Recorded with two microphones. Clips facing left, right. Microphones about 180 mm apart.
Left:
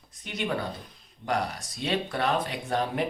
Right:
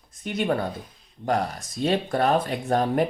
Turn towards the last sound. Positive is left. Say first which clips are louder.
# right 6 dB
turn(degrees=-45)  # may be behind; listen again after turning